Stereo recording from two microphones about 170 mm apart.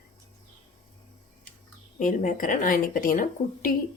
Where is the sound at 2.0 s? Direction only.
50° left (ahead or behind).